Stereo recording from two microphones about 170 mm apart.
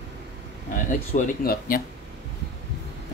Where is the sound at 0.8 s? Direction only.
50° left (ahead or behind).